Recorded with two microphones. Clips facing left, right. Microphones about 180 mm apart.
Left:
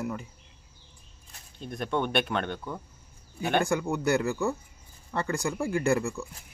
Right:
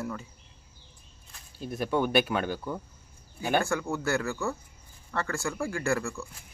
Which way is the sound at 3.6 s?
15° left (ahead or behind).